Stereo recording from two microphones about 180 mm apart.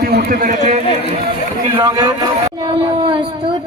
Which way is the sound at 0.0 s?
60° right (ahead or behind).